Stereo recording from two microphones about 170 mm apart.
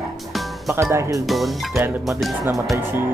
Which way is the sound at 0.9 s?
15° right (ahead or behind).